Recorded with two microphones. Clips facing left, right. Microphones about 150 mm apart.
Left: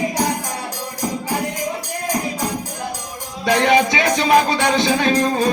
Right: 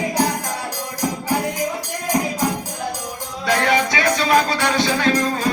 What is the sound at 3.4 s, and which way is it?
Music, 20° left (ahead or behind).